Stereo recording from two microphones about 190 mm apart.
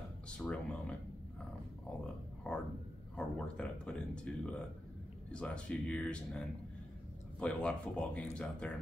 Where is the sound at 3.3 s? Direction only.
5° left (ahead or behind).